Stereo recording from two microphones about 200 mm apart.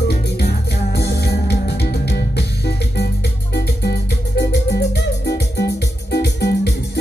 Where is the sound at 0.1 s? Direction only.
55° left (ahead or behind).